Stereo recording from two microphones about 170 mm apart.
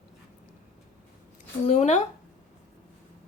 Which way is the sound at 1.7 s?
45° left (ahead or behind).